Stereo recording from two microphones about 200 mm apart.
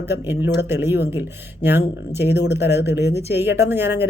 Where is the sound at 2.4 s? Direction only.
55° left (ahead or behind).